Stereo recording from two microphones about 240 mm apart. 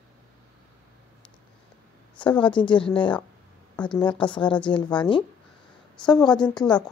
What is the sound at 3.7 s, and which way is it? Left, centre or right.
Speech, centre.